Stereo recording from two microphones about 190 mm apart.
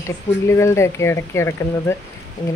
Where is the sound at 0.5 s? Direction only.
15° left (ahead or behind).